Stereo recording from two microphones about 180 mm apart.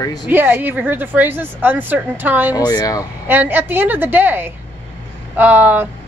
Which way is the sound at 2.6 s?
20° left (ahead or behind).